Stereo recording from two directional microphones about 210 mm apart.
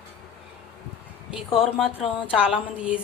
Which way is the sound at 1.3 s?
25° left (ahead or behind).